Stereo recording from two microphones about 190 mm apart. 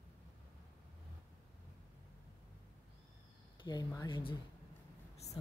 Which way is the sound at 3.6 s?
20° left (ahead or behind).